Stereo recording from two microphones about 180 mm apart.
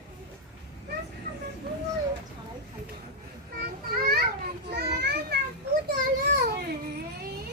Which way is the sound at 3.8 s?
55° right (ahead or behind).